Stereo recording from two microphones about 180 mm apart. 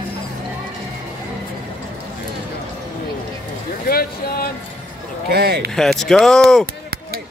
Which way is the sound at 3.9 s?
55° left (ahead or behind).